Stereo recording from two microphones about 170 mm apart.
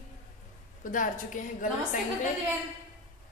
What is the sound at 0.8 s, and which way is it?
Speech, 50° left (ahead or behind).